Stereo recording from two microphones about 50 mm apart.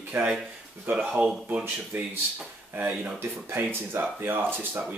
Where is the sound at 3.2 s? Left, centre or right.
Right.